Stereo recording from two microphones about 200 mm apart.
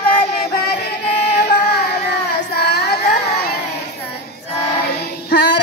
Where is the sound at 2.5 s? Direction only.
55° left (ahead or behind).